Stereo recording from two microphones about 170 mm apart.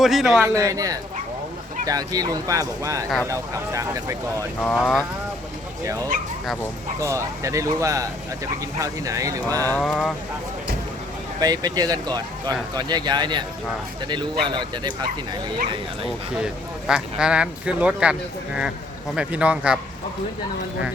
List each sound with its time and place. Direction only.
0.0 s speech: centre (ahead or behind)
0.4 s speech: 20° right (ahead or behind)
4.6 s speech: 5° left (ahead or behind)
7.0 s speech: 15° right (ahead or behind)
9.7 s speech: 10° left (ahead or behind)
11.3 s speech: 25° right (ahead or behind)
16.0 s speech: 5° right (ahead or behind)